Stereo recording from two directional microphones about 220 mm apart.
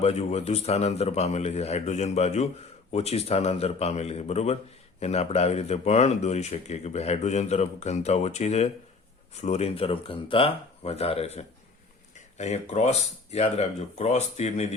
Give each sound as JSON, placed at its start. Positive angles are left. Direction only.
{"t": 0.0, "sound": "speech", "side_deg": 30}